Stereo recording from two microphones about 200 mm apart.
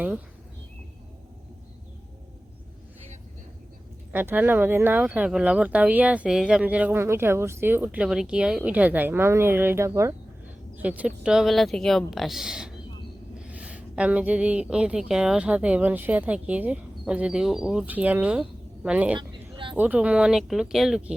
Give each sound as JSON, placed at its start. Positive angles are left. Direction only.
{"t": 4.1, "sound": "speech", "side_deg": -10}
{"t": 19.3, "sound": "a sound", "side_deg": -25}
{"t": 19.7, "sound": "speech", "side_deg": -10}